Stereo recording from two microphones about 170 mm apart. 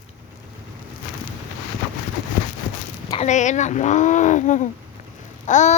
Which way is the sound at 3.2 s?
45° left (ahead or behind).